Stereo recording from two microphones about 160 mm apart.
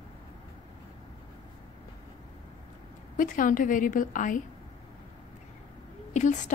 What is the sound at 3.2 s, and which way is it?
A woman's voice, 55° left (ahead or behind).